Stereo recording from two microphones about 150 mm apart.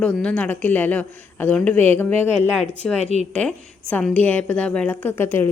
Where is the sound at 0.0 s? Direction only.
10° left (ahead or behind).